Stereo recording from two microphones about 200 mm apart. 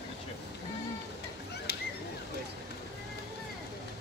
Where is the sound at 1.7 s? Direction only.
55° left (ahead or behind).